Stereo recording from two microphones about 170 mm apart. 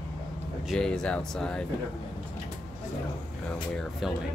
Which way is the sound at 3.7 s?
5° right (ahead or behind).